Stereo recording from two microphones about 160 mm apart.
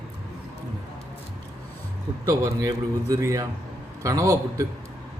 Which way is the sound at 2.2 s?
20° right (ahead or behind).